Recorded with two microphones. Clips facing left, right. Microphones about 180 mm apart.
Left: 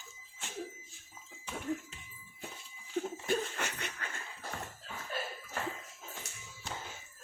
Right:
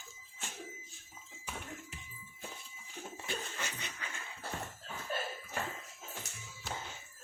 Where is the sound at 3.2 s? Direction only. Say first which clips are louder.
Left 3 dB; 55° left (ahead or behind).